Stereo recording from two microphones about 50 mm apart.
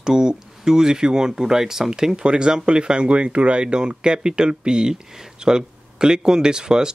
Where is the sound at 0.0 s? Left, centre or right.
Centre.